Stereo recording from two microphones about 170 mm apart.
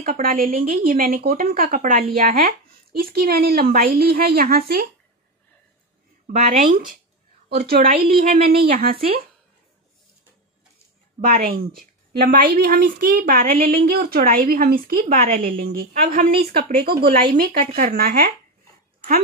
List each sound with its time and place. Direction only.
0.0 s speech: 55° right (ahead or behind)
6.2 s speech: 45° right (ahead or behind)
7.4 s speech: 65° right (ahead or behind)
11.1 s speech: 55° right (ahead or behind)